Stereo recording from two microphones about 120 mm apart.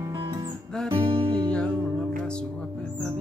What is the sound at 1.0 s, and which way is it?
Music, 50° right (ahead or behind).